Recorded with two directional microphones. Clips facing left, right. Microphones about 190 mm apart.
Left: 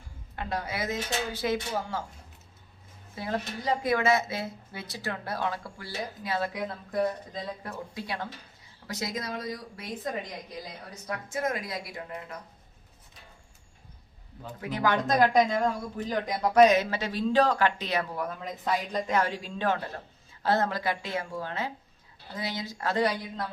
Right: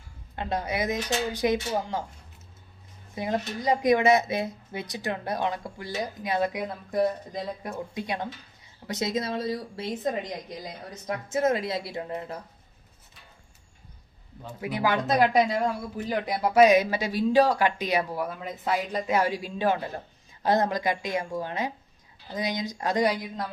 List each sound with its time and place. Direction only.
0.3 s speech: 20° right (ahead or behind)
3.2 s speech: 15° right (ahead or behind)
14.6 s speech: 10° right (ahead or behind)